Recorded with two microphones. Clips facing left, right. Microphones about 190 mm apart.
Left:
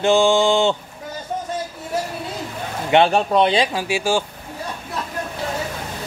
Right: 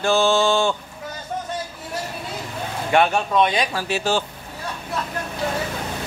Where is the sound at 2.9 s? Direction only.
30° left (ahead or behind).